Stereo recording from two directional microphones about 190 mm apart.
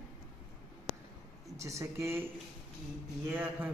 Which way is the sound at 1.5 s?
15° right (ahead or behind).